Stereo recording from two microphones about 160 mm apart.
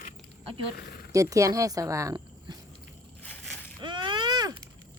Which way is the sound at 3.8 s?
30° right (ahead or behind).